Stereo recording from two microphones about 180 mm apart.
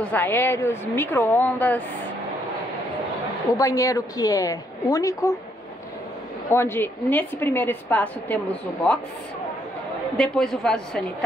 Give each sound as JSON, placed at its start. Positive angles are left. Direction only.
{"t": 0.0, "sound": "a woman's voice", "side_deg": 10}
{"t": 3.5, "sound": "a woman's voice", "side_deg": 20}
{"t": 6.5, "sound": "a woman's voice", "side_deg": 15}
{"t": 10.1, "sound": "a woman's voice", "side_deg": 5}